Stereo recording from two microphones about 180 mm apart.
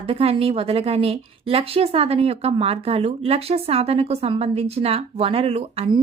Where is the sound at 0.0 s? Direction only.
30° right (ahead or behind).